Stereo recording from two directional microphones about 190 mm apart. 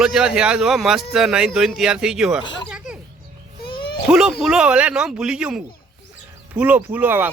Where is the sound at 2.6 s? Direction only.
5° right (ahead or behind).